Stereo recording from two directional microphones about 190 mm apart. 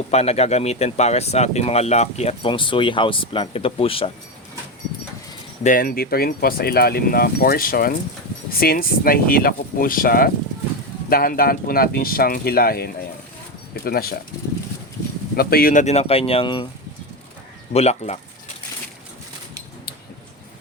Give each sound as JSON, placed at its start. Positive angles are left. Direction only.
{"t": 0.1, "sound": "speech", "side_deg": 35}
{"t": 5.6, "sound": "speech", "side_deg": 45}
{"t": 15.4, "sound": "speech", "side_deg": 55}
{"t": 17.7, "sound": "speech", "side_deg": 35}